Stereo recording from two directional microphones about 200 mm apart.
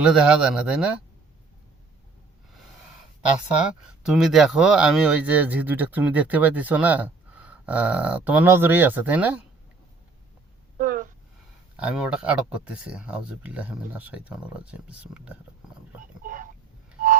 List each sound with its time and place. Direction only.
0.0 s speech: 5° right (ahead or behind)
3.7 s speech: centre (ahead or behind)
10.8 s a sound: 40° right (ahead or behind)
11.8 s speech: 5° right (ahead or behind)
16.2 s vehicle: 40° right (ahead or behind)